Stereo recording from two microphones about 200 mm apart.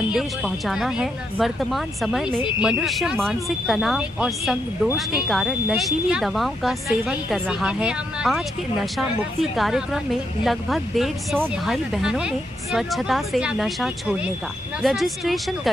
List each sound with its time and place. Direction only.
0.1 s speech: centre (ahead or behind)